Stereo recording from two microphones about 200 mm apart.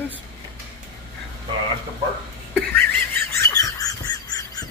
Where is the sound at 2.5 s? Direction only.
10° left (ahead or behind).